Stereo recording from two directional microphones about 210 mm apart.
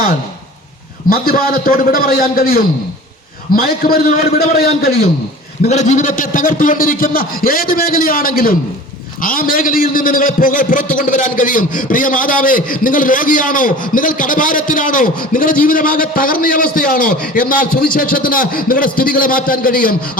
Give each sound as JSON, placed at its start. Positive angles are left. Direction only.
{"t": 1.1, "sound": "a man's voice", "side_deg": 45}
{"t": 5.6, "sound": "a man's voice", "side_deg": 35}